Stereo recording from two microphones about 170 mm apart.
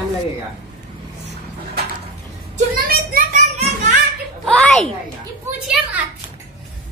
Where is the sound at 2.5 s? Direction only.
60° right (ahead or behind).